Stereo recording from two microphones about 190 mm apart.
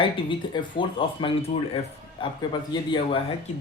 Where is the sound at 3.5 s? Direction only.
40° left (ahead or behind).